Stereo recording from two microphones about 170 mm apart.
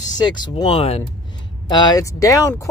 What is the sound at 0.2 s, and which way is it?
Speech, 25° left (ahead or behind).